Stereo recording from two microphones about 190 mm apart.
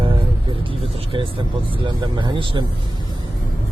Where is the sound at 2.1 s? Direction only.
25° right (ahead or behind).